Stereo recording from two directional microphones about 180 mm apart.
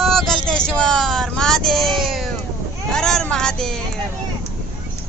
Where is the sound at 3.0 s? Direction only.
5° left (ahead or behind).